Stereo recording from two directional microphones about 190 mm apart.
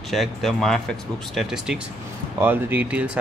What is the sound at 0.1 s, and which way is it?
Speech, centre (ahead or behind).